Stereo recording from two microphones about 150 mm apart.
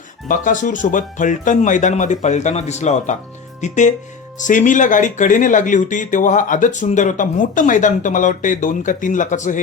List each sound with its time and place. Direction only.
0.3 s speech: 60° left (ahead or behind)